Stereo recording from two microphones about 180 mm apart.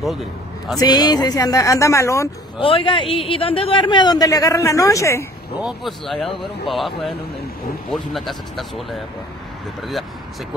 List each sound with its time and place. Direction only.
0.7 s a man's voice: 20° left (ahead or behind)
2.6 s a man's voice: 30° left (ahead or behind)
5.6 s speech: centre (ahead or behind)